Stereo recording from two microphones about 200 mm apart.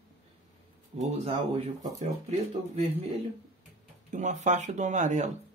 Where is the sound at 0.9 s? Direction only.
30° right (ahead or behind).